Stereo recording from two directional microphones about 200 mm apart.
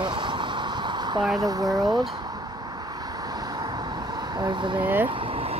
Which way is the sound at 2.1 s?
20° right (ahead or behind).